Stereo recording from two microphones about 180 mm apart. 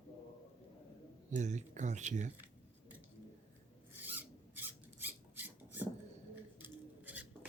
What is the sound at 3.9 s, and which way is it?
Filing, 10° right (ahead or behind).